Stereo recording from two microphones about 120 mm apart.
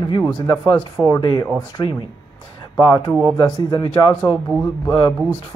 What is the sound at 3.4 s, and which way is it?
Speech, 35° left (ahead or behind).